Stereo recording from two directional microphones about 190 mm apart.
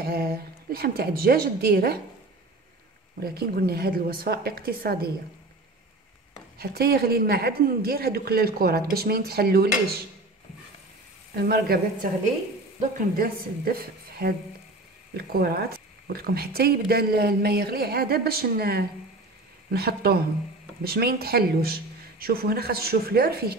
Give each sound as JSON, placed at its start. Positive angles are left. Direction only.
{"t": 0.0, "sound": "speech", "side_deg": -50}
{"t": 3.2, "sound": "speech", "side_deg": -55}
{"t": 6.6, "sound": "speech", "side_deg": -55}
{"t": 11.3, "sound": "speech", "side_deg": -55}
{"t": 13.1, "sound": "speech", "side_deg": -50}